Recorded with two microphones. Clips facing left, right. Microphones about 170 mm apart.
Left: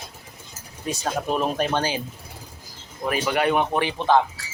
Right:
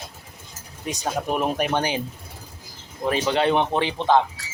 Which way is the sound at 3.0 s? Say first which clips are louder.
Right 1 dB; 25° right (ahead or behind).